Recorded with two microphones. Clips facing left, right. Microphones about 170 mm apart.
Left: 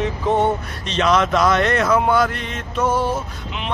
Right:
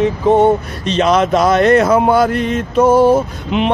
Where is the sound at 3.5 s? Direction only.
70° right (ahead or behind).